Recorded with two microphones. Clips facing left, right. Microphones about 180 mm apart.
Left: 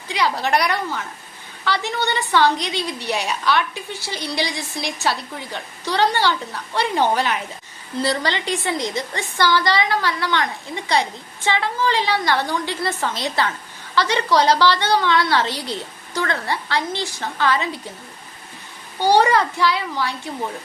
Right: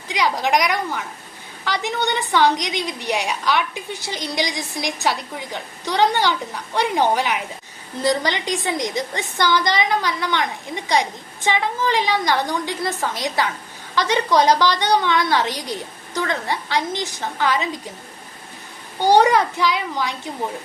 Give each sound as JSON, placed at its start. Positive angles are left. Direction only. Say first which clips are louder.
{"t": 0.1, "sound": "a woman's voice", "louder": "right 1 dB", "side_deg": -15}
{"t": 18.9, "sound": "a woman's voice", "louder": "right 1 dB", "side_deg": -20}